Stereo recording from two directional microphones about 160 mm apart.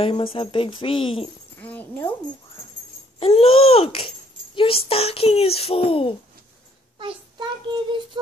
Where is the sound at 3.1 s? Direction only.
40° left (ahead or behind).